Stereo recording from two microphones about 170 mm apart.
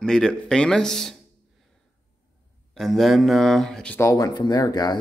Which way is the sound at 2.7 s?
Centre (ahead or behind).